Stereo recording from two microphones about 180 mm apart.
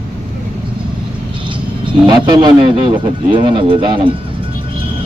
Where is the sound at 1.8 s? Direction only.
25° right (ahead or behind).